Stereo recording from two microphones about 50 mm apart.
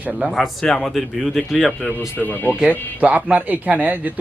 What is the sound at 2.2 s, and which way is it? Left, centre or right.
Speech, left.